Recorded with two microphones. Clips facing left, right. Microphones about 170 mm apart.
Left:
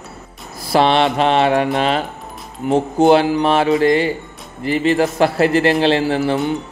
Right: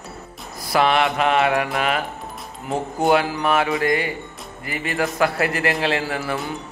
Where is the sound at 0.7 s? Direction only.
30° left (ahead or behind).